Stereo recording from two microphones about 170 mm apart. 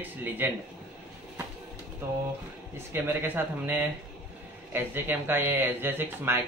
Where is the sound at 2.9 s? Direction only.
10° right (ahead or behind).